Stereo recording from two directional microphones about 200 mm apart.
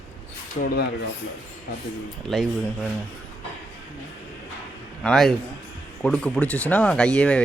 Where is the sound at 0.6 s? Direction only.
35° left (ahead or behind).